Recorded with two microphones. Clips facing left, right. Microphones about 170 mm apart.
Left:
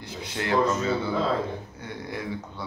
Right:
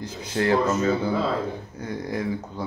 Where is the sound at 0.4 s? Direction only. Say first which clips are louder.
Right 8 dB; 40° right (ahead or behind).